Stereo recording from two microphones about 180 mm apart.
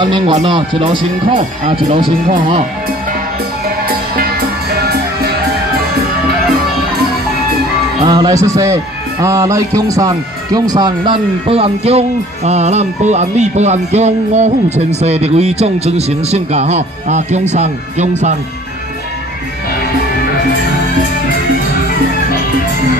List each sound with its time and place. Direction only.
0.0 s speech: 25° right (ahead or behind)
3.9 s music: 60° right (ahead or behind)
8.0 s speech: 20° right (ahead or behind); by 18.1 s 40° right (ahead or behind)